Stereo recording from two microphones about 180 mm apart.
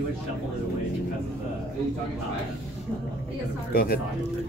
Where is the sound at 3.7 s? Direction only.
55° left (ahead or behind).